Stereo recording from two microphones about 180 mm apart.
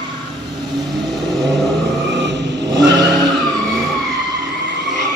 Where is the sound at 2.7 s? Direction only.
75° right (ahead or behind).